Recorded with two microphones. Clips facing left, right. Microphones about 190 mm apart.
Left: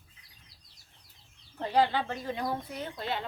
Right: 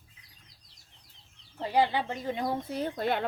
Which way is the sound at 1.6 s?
10° right (ahead or behind).